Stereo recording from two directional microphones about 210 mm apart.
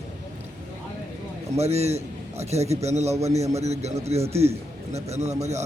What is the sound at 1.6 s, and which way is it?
Speech, 30° right (ahead or behind).